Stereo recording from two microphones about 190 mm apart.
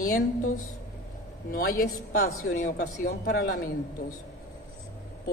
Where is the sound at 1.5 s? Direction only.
50° left (ahead or behind).